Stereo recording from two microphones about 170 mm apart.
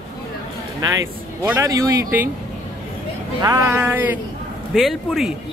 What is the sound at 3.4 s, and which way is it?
Speech, 20° right (ahead or behind).